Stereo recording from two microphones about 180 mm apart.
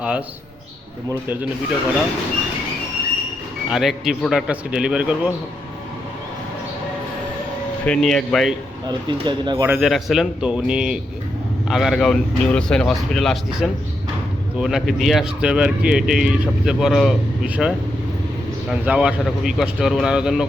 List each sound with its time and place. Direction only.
0.0 s a man's voice: 5° right (ahead or behind)
3.7 s speech: centre (ahead or behind)
7.9 s speech: 5° left (ahead or behind)
8.9 s speech: 25° right (ahead or behind)
9.6 s speech: 5° right (ahead or behind)